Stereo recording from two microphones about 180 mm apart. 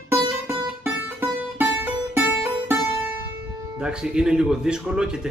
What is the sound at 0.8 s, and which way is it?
Music, 10° right (ahead or behind).